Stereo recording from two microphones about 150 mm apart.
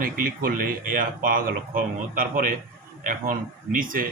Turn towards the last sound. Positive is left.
turn(degrees=-65)  # may be behind; listen again after turning